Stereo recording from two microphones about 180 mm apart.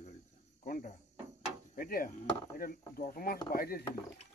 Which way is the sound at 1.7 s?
50° left (ahead or behind).